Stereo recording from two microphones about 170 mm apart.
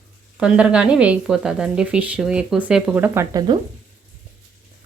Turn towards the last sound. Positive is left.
turn(degrees=-25)  # may be behind; listen again after turning